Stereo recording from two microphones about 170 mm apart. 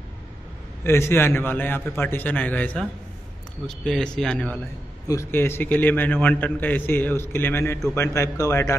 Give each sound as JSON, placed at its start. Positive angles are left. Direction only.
{"t": 0.8, "sound": "a man's voice", "side_deg": 15}
{"t": 5.0, "sound": "a man's voice", "side_deg": 15}